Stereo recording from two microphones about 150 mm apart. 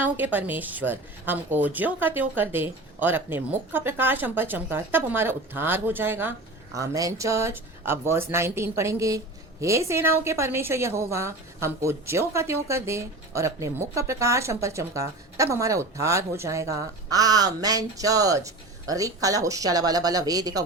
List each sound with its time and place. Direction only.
0.0 s a woman's voice: 10° right (ahead or behind)